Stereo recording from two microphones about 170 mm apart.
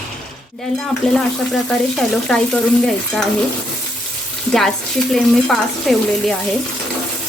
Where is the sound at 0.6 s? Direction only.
Centre (ahead or behind).